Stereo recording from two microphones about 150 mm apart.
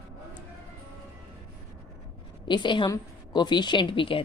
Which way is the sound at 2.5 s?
30° left (ahead or behind).